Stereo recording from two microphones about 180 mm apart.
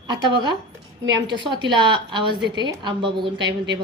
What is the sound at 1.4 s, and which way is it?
Speech, 25° right (ahead or behind).